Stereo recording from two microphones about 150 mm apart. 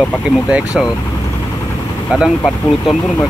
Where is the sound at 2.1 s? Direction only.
Centre (ahead or behind).